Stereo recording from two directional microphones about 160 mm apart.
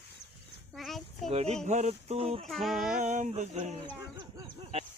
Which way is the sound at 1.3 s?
40° right (ahead or behind).